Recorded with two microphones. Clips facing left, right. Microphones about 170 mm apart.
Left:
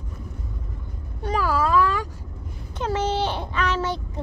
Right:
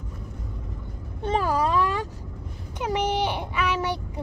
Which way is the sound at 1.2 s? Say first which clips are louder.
Even; 25° right (ahead or behind).